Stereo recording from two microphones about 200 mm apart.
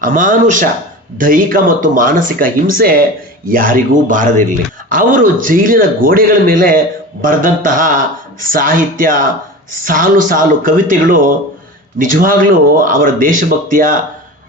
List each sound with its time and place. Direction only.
0.0 s speech: 40° right (ahead or behind)